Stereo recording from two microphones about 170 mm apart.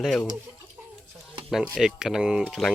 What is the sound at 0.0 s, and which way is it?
Speech, 5° left (ahead or behind).